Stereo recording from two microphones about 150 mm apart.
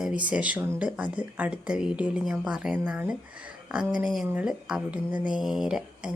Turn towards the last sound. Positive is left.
turn(degrees=-5)  # may be behind; listen again after turning